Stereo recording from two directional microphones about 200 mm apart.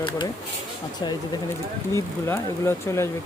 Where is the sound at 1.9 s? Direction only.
10° left (ahead or behind).